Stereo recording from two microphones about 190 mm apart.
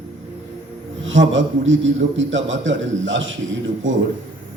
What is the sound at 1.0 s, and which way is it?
A man's voice, 80° right.